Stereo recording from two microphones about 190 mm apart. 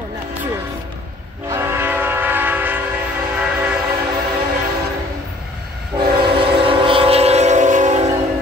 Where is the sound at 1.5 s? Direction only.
15° right (ahead or behind).